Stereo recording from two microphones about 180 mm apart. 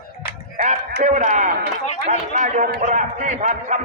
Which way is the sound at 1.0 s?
45° right (ahead or behind).